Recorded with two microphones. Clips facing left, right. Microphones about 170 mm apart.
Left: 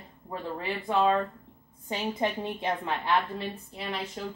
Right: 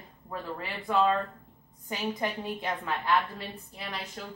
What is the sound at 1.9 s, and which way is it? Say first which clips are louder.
A woman's voice: left 2 dB; 25° left (ahead or behind).